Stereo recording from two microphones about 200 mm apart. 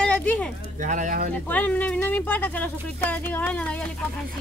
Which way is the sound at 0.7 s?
40° right (ahead or behind).